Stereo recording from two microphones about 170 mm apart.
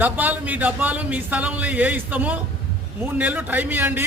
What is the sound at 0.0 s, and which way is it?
A man's voice, 10° right (ahead or behind).